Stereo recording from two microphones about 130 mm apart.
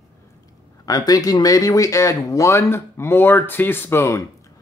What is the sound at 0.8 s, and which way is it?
Speech, 30° left (ahead or behind).